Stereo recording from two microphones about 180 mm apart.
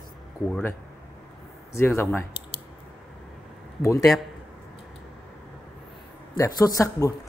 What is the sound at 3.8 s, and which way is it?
Speech, 15° left (ahead or behind).